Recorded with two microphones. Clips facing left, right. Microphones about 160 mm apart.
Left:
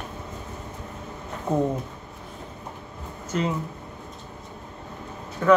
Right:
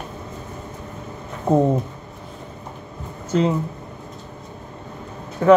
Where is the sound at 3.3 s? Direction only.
30° right (ahead or behind).